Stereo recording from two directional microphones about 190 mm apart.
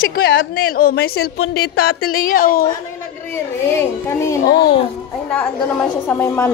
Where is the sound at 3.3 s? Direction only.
15° left (ahead or behind).